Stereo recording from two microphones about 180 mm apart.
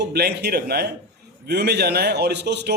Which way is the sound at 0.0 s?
65° right (ahead or behind).